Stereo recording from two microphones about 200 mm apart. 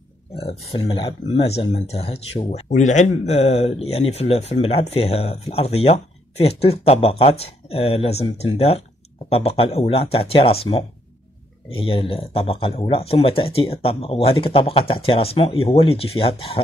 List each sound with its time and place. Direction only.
0.4 s speech: 30° left (ahead or behind)